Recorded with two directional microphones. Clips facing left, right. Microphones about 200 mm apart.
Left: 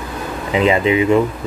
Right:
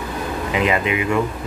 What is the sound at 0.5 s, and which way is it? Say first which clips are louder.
Speech: left 6 dB; 25° left (ahead or behind).